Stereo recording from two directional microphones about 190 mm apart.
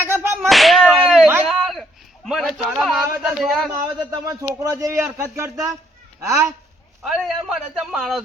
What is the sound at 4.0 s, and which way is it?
Speech, 20° right (ahead or behind).